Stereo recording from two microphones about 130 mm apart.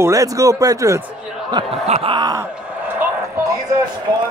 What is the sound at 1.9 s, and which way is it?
Groan, 55° right (ahead or behind).